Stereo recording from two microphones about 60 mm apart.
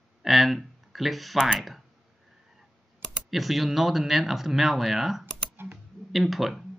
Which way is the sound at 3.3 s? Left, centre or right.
Centre.